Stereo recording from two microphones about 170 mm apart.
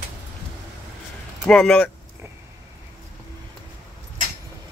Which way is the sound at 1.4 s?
5° left (ahead or behind).